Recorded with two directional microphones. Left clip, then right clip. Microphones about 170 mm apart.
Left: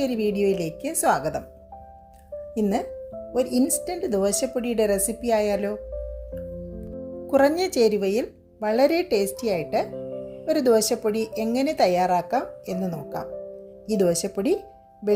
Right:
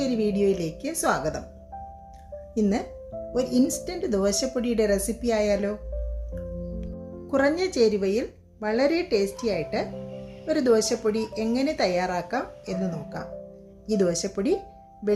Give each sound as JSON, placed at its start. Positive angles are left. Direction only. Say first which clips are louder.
{"t": 0.0, "sound": "a woman's voice", "louder": "left 1 dB", "side_deg": 35}
{"t": 2.6, "sound": "a woman's voice", "louder": "left 1 dB", "side_deg": 30}
{"t": 7.3, "sound": "a woman's voice", "louder": "left 3 dB", "side_deg": 45}